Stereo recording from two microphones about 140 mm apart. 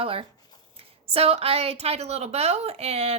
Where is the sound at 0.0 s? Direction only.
40° right (ahead or behind).